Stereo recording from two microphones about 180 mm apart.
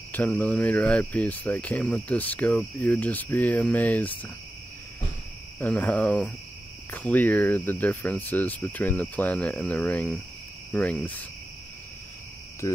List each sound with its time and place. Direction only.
0.1 s speech: 10° left (ahead or behind)
5.6 s speech: 5° left (ahead or behind)
12.6 s a sound: 20° left (ahead or behind)